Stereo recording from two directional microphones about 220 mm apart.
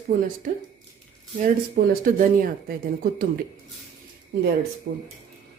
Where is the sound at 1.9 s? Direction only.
40° right (ahead or behind).